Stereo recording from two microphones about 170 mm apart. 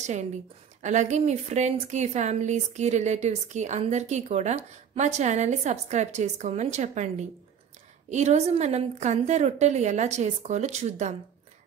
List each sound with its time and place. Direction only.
0.0 s a woman's voice: 45° right (ahead or behind)